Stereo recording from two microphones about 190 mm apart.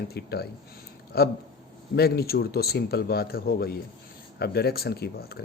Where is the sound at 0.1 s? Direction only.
55° left (ahead or behind).